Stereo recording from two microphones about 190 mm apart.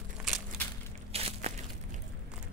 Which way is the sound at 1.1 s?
35° right (ahead or behind).